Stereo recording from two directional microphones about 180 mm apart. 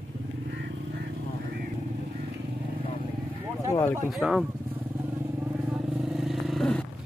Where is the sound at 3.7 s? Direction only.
15° left (ahead or behind).